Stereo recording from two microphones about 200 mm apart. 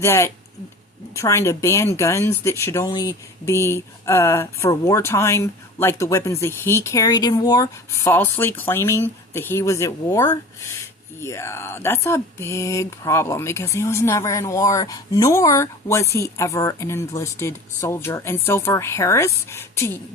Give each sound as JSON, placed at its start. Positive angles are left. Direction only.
{"t": 0.0, "sound": "speech", "side_deg": 15}